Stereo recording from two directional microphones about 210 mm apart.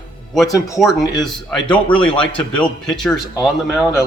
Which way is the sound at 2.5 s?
Centre (ahead or behind).